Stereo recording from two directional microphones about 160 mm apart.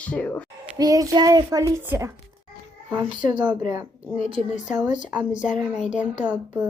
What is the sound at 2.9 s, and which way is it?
Speech, 30° right (ahead or behind).